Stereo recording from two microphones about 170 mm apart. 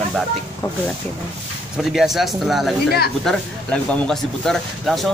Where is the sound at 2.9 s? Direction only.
65° left (ahead or behind).